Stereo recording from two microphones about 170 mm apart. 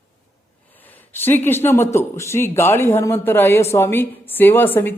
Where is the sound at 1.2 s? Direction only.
10° left (ahead or behind).